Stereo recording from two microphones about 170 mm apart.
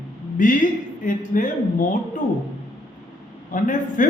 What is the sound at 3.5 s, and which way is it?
Speech, 50° left (ahead or behind).